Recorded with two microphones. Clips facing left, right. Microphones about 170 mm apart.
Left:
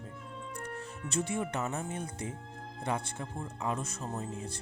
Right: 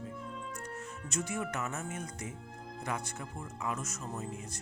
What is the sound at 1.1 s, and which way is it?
Speech, 30° left (ahead or behind).